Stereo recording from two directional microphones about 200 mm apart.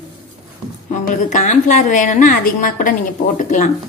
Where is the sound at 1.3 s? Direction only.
35° left (ahead or behind).